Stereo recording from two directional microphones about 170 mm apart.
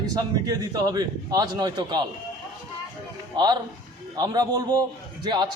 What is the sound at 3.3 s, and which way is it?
A man's voice, 25° right (ahead or behind).